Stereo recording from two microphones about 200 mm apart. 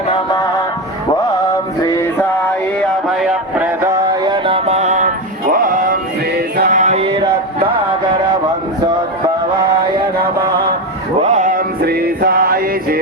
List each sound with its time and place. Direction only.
1.8 s music: 15° left (ahead or behind)
3.2 s music: 5° right (ahead or behind)
4.1 s music: 20° right (ahead or behind)
11.2 s music: 35° right (ahead or behind)